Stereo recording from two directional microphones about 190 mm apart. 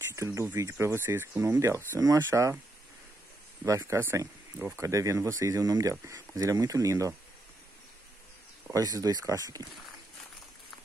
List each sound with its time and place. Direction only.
0.1 s speech: 15° right (ahead or behind)
3.6 s speech: 15° right (ahead or behind)
8.6 s speech: 15° right (ahead or behind)